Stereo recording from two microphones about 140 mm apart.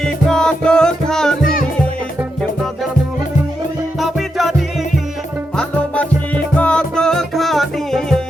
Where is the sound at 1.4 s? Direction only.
90° left.